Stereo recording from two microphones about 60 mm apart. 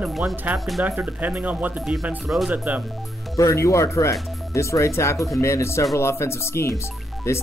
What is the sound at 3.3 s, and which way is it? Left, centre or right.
Speech, left.